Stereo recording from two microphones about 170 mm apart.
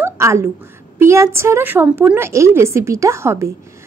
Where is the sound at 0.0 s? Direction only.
15° right (ahead or behind).